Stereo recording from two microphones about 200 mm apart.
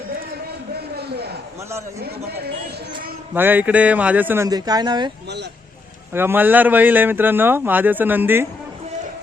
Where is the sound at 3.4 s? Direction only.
10° right (ahead or behind).